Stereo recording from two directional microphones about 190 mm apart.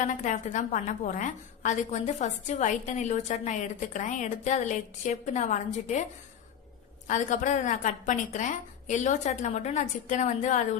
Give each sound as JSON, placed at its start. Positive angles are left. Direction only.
{"t": 0.0, "sound": "a woman's voice", "side_deg": 40}
{"t": 7.1, "sound": "a woman's voice", "side_deg": 40}